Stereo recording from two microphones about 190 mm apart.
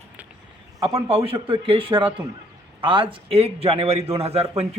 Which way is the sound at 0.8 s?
30° right (ahead or behind).